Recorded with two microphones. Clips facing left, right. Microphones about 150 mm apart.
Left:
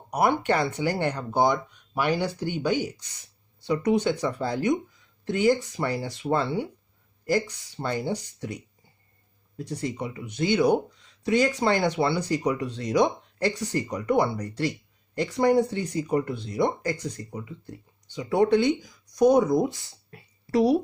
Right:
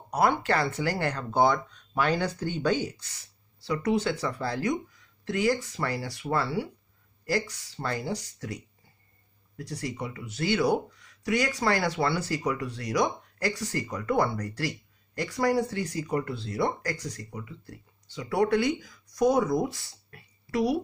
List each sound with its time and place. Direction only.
0.1 s speech: 15° left (ahead or behind)